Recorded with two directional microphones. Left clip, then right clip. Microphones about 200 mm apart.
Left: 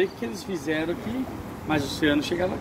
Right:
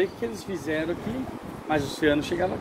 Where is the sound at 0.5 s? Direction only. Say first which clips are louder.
Left 2 dB; 55° left (ahead or behind).